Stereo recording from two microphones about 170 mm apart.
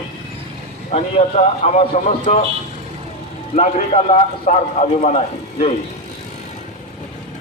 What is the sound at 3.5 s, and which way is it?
A man's voice, 45° left (ahead or behind).